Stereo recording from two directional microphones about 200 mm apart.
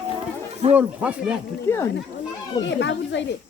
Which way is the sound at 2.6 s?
65° left (ahead or behind).